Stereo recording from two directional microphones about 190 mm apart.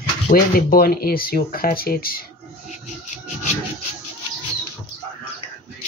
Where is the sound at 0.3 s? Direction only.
50° left (ahead or behind).